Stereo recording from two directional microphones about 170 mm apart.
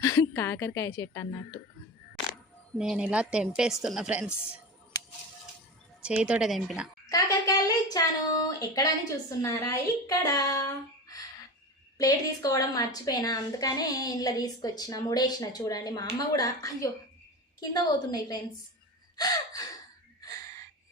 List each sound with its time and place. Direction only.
0.0 s a woman's voice: 20° left (ahead or behind)
2.7 s a woman's voice: 5° right (ahead or behind)
6.0 s speech: 5° right (ahead or behind)
7.1 s speech: 20° left (ahead or behind)
11.9 s a woman's voice: 20° left (ahead or behind)
19.1 s gasp: 20° left (ahead or behind)